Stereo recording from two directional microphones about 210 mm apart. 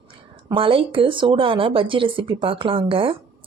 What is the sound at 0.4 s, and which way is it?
Speech, 25° right (ahead or behind).